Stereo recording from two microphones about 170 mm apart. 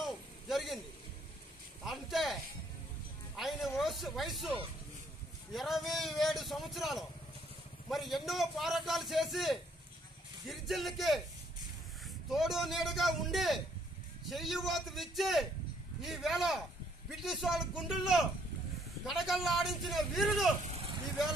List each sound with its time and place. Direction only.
0.0 s a sound: centre (ahead or behind)
1.9 s a man's voice: centre (ahead or behind)
3.3 s a man's voice: centre (ahead or behind)
12.3 s a man's voice: centre (ahead or behind)
20.6 s vehicle: 40° right (ahead or behind)